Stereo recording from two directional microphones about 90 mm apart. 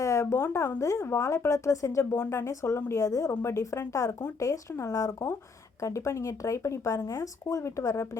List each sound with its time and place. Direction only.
0.0 s speech: 35° left (ahead or behind)